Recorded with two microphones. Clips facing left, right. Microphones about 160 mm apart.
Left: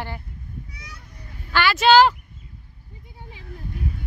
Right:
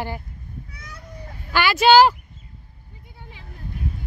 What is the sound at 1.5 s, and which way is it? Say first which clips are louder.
Speech: right 1 dB; 10° right (ahead or behind).